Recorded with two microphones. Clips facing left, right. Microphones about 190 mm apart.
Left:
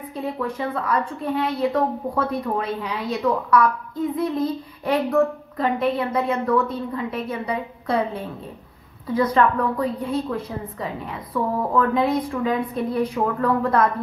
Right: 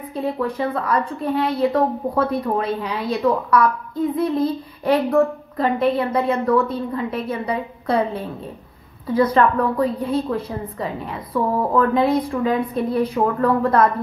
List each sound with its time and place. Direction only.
0.1 s a woman's voice: 35° right (ahead or behind)